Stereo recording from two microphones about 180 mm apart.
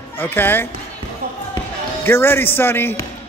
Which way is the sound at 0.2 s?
10° left (ahead or behind).